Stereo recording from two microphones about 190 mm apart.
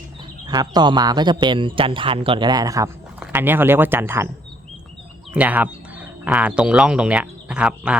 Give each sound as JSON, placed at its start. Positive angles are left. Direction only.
{"t": 0.4, "sound": "a man's voice", "side_deg": -20}
{"t": 5.3, "sound": "speech", "side_deg": -10}